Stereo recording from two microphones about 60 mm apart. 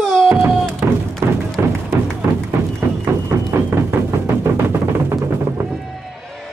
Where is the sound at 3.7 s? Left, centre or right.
Right.